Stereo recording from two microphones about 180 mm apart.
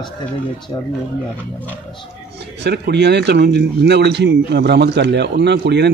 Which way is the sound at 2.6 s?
65° right (ahead or behind).